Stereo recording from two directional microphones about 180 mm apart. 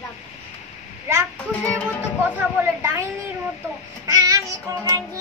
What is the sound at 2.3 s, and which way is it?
Speech, 10° right (ahead or behind).